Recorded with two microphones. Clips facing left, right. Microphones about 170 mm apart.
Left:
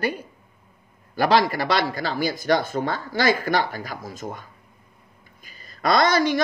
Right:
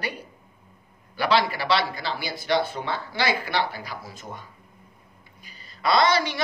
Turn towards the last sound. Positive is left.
turn(degrees=45)  # may be behind; listen again after turning